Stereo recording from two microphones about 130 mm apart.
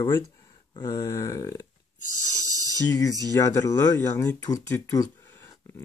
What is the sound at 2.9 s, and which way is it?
Speech, 25° left (ahead or behind).